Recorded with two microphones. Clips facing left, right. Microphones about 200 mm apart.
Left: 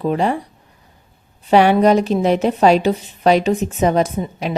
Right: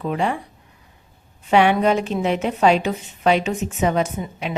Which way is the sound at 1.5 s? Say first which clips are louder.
Left 4 dB; 40° left (ahead or behind).